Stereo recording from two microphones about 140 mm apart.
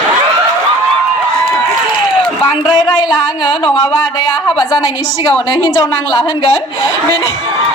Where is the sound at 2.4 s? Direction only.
30° left (ahead or behind).